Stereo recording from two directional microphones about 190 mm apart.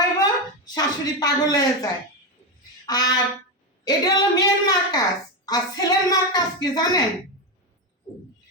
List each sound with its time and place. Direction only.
0.2 s a woman's voice: 20° left (ahead or behind)